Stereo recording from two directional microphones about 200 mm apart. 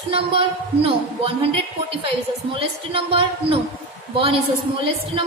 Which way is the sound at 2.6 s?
25° right (ahead or behind).